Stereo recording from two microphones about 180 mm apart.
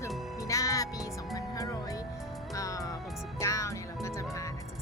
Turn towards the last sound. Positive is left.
turn(degrees=15)  # may be behind; listen again after turning